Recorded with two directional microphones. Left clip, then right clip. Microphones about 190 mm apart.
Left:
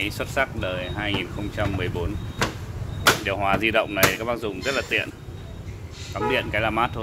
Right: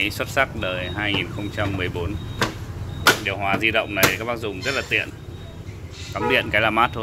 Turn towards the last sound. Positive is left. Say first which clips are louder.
# right 4 dB
turn(degrees=0)  # may be behind; listen again after turning